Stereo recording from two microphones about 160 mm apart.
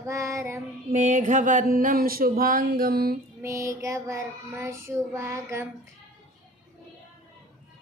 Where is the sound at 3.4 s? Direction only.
20° right (ahead or behind).